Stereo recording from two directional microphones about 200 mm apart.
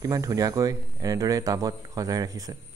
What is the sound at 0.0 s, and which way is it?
Speech, 15° right (ahead or behind).